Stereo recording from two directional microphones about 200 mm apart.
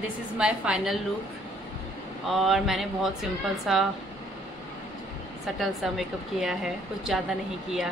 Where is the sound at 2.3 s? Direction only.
Centre (ahead or behind).